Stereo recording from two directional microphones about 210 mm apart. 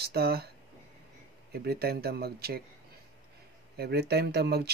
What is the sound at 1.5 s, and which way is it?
Speech, 50° right (ahead or behind).